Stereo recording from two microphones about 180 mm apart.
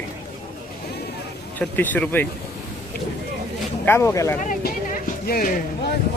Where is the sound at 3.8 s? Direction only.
15° left (ahead or behind).